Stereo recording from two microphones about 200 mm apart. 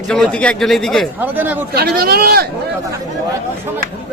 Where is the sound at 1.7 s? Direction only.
50° right (ahead or behind).